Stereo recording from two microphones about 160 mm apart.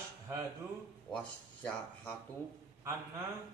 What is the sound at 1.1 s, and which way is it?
Speech, 5° left (ahead or behind).